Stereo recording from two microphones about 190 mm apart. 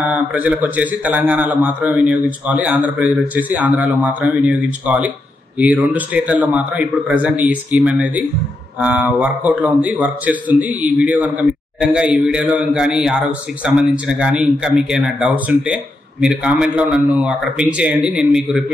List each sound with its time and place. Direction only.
0.0 s a man's voice: 5° right (ahead or behind)